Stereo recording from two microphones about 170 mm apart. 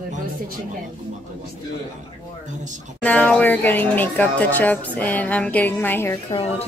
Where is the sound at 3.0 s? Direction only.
10° left (ahead or behind).